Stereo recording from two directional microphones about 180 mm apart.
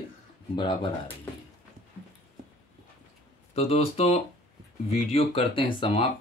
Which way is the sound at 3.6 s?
35° left (ahead or behind).